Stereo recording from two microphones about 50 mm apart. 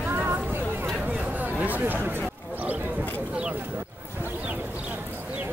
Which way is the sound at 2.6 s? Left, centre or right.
Right.